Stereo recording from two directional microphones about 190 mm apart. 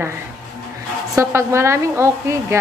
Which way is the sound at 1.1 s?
15° right (ahead or behind).